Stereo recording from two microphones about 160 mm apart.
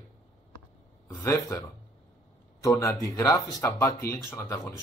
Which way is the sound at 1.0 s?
20° left (ahead or behind).